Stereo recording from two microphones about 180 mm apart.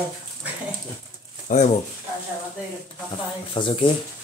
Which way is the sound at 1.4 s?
40° left (ahead or behind).